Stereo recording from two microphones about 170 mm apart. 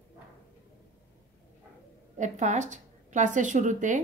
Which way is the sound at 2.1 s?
45° right (ahead or behind).